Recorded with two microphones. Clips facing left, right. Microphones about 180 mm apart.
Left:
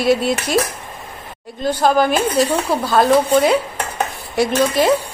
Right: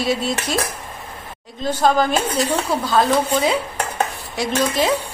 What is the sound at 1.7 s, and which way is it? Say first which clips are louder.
A woman's voice: left 2 dB; 5° left (ahead or behind).